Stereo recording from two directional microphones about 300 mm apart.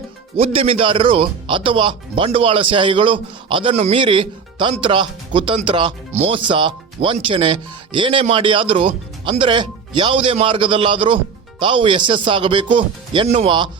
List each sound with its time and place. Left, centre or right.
0.3 s speech: centre